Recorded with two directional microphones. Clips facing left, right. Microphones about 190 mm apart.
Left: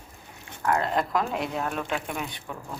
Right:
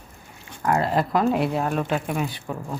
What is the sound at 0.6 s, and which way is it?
Speech, 10° right (ahead or behind).